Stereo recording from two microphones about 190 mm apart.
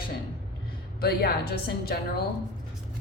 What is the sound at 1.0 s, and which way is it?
A woman's voice, 55° left (ahead or behind).